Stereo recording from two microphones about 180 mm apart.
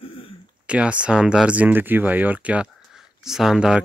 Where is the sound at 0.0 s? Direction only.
30° left (ahead or behind).